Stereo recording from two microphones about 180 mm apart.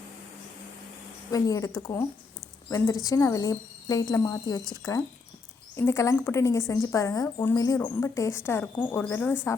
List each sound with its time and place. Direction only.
1.3 s speech: 20° left (ahead or behind)